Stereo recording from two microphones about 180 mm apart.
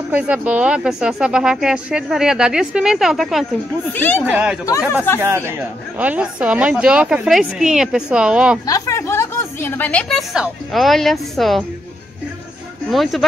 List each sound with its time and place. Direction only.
0.1 s a woman's voice: 10° right (ahead or behind)
3.9 s speech: 10° left (ahead or behind)
4.2 s a woman's voice: 5° right (ahead or behind)
8.6 s a woman's voice: 20° left (ahead or behind); by 11.6 s centre (ahead or behind)
12.9 s a woman's voice: centre (ahead or behind)